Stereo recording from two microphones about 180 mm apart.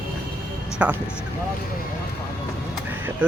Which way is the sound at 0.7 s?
5° right (ahead or behind).